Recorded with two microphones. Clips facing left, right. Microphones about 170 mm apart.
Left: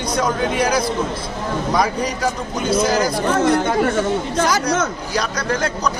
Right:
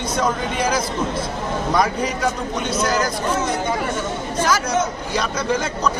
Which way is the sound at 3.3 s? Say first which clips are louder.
Left 8 dB; 60° left (ahead or behind).